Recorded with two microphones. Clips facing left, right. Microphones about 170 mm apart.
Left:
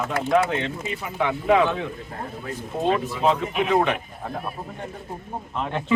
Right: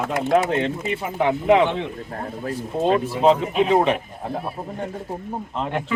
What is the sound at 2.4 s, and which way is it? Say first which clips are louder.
Speech: right 3 dB; 35° right (ahead or behind).